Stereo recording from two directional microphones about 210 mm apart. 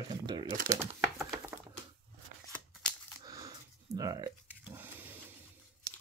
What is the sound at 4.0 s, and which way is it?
Speech, 20° right (ahead or behind).